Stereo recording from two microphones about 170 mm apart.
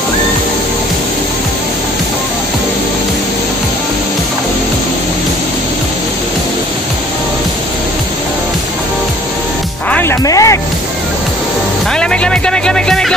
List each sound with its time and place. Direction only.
9.8 s music: 10° left (ahead or behind)
10.2 s music: 20° left (ahead or behind)
11.9 s speech: 5° left (ahead or behind)